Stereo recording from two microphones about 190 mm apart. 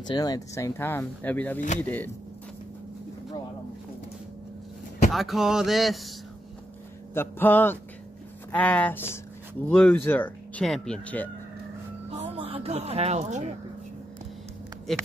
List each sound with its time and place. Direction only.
0.0 s speech: 20° left (ahead or behind)
5.1 s speech: centre (ahead or behind)
7.2 s speech: 10° left (ahead or behind)
12.2 s speech: 30° right (ahead or behind)
14.9 s speech: centre (ahead or behind)